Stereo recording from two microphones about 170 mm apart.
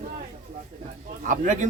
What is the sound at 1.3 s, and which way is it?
Speech, 45° right (ahead or behind).